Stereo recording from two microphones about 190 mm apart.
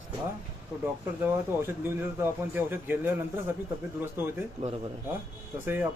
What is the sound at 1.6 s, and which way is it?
Speech, 10° right (ahead or behind).